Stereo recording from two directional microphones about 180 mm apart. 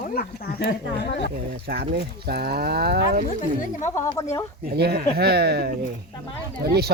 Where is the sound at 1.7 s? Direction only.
60° right (ahead or behind).